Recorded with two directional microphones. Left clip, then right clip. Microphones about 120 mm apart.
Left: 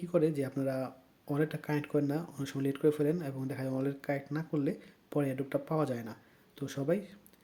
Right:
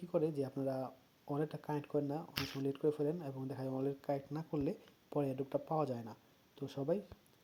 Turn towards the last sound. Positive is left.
turn(degrees=-25)  # may be behind; listen again after turning